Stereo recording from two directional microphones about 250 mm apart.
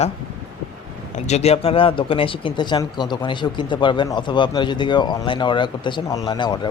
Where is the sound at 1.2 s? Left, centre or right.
Left.